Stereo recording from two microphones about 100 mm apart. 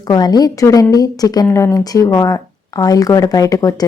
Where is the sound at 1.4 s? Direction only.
25° left (ahead or behind).